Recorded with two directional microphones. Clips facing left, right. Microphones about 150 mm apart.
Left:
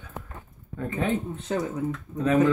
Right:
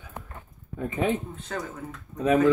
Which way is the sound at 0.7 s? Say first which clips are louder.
Right 1 dB; 20° right (ahead or behind).